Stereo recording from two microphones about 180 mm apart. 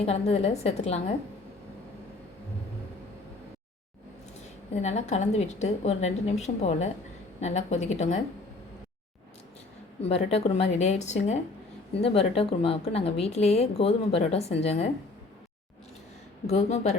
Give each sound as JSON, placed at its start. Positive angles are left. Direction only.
{"t": 0.0, "sound": "speech", "side_deg": 35}
{"t": 4.4, "sound": "speech", "side_deg": 40}
{"t": 10.0, "sound": "speech", "side_deg": 35}
{"t": 16.5, "sound": "speech", "side_deg": 35}